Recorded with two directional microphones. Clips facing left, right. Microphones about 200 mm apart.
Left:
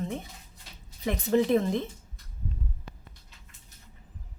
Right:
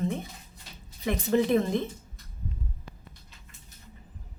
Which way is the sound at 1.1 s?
30° left (ahead or behind).